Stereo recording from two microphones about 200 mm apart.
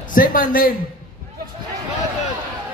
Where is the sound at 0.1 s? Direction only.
45° left (ahead or behind).